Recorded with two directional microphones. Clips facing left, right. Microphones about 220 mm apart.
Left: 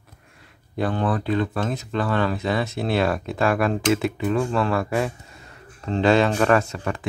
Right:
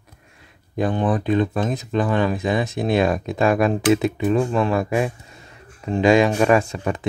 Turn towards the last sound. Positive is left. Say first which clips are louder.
# right 3 dB
turn(degrees=-20)  # may be behind; listen again after turning